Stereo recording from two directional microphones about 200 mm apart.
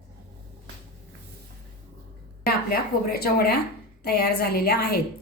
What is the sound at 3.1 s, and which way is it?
A woman's voice, 50° left (ahead or behind).